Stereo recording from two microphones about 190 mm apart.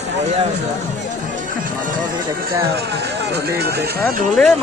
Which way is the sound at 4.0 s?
Centre (ahead or behind).